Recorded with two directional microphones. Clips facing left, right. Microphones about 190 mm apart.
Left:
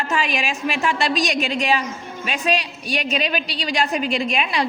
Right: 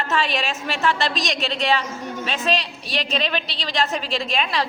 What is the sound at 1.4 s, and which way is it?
A woman's voice, 15° left (ahead or behind).